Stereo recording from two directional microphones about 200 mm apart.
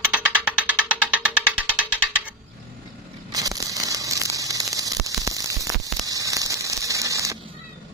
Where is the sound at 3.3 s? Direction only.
15° right (ahead or behind).